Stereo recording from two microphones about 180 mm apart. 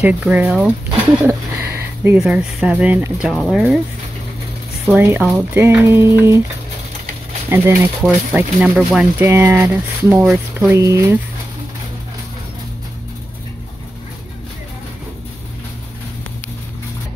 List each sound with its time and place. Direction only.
0.0 s speech: 5° right (ahead or behind)
4.8 s speech: 10° right (ahead or behind)
7.4 s speech: 10° right (ahead or behind)
10.2 s speech: centre (ahead or behind)
10.7 s speech: 15° right (ahead or behind)